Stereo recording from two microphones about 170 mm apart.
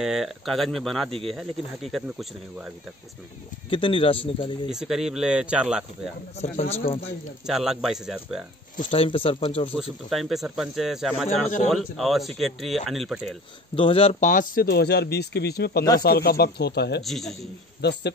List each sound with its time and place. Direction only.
0.0 s speech: centre (ahead or behind)
3.7 s speech: 30° left (ahead or behind)
4.6 s speech: 5° right (ahead or behind)
6.3 s speech: 40° left (ahead or behind)
7.4 s speech: centre (ahead or behind)
8.7 s speech: 40° left (ahead or behind)
9.7 s speech: centre (ahead or behind)
13.7 s speech: 30° left (ahead or behind)
14.2 s speech: 50° left (ahead or behind); by 17.0 s 75° left (ahead or behind)
17.0 s speech: centre (ahead or behind)
17.8 s a man's voice: 90° left